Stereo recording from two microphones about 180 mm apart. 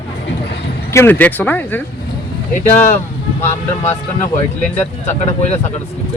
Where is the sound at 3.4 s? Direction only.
10° left (ahead or behind).